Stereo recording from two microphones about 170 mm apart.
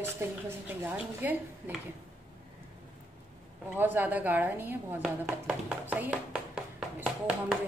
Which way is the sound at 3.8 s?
10° right (ahead or behind).